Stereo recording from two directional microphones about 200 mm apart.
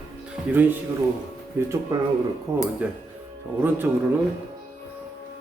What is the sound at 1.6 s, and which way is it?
A man's voice, 10° right (ahead or behind).